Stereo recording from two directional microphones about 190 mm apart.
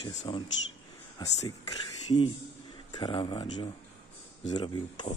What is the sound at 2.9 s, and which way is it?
Speech, 25° left (ahead or behind).